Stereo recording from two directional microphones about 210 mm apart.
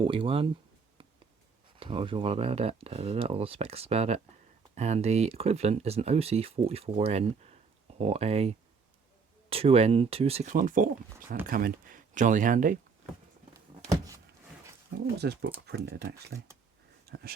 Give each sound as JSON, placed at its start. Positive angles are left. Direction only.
{"t": 0.0, "sound": "speech", "side_deg": -25}
{"t": 1.8, "sound": "speech", "side_deg": -25}
{"t": 15.2, "sound": "speech", "side_deg": -55}
{"t": 17.1, "sound": "a sound", "side_deg": -50}